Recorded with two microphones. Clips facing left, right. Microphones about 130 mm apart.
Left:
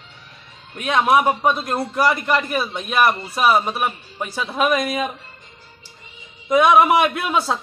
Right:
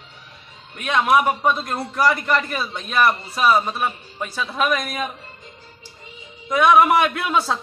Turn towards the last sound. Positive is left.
turn(degrees=10)  # may be behind; listen again after turning